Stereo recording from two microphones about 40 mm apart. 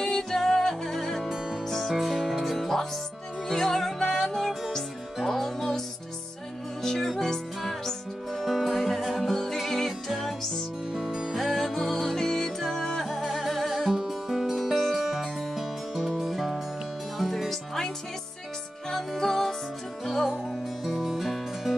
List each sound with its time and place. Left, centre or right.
0.0 s music: centre
3.4 s music: centre
6.8 s music: centre
8.4 s music: centre
10.9 s music: centre
11.3 s music: centre
20.8 s music: centre